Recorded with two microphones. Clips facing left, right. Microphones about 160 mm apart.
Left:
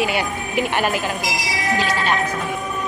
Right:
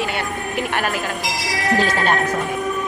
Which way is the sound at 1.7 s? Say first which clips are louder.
Right 2 dB; 50° right (ahead or behind).